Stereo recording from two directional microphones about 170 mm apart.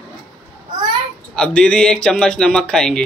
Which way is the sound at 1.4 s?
5° left (ahead or behind).